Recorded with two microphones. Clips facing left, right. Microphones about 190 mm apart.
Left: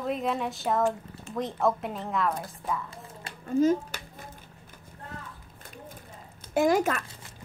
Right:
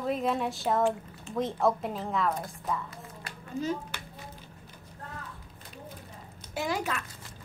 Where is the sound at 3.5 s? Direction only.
45° left (ahead or behind).